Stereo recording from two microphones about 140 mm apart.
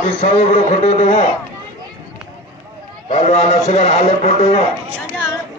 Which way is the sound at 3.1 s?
50° left (ahead or behind).